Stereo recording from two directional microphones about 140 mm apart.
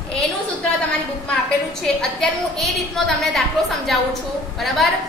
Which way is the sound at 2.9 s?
Centre (ahead or behind).